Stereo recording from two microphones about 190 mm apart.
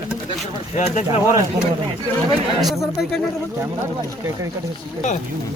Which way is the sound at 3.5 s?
15° right (ahead or behind).